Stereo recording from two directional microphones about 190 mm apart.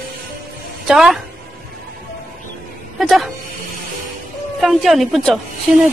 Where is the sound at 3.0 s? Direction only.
Centre (ahead or behind).